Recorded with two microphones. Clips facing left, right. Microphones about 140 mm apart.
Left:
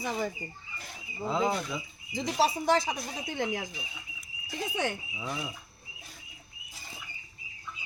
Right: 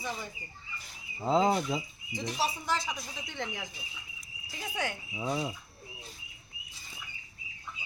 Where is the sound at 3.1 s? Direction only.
90° left.